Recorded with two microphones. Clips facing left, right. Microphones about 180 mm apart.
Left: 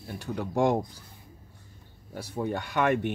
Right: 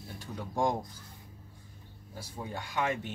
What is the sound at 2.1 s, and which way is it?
Speech, 70° left (ahead or behind).